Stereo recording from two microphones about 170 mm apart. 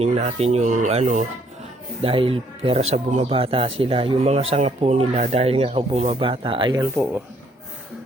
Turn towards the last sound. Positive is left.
turn(degrees=-25)  # may be behind; listen again after turning